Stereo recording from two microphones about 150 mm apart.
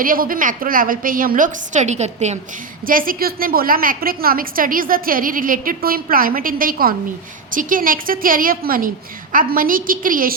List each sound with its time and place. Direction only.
0.0 s a woman's voice: 70° right (ahead or behind); by 2.4 s 50° right (ahead or behind)
2.8 s a woman's voice: 70° right (ahead or behind)
7.5 s a woman's voice: 65° right (ahead or behind)